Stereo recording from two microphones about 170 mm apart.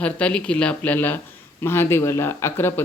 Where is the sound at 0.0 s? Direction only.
5° left (ahead or behind).